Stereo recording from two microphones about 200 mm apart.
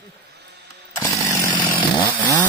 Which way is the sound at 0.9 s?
15° left (ahead or behind).